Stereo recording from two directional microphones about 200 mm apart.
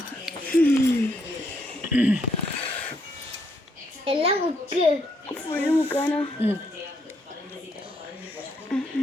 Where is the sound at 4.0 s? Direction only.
30° right (ahead or behind).